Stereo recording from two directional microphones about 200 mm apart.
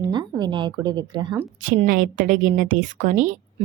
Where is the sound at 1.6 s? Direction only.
40° right (ahead or behind).